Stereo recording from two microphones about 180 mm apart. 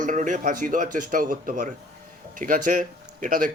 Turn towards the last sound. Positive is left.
turn(degrees=-45)  # may be behind; listen again after turning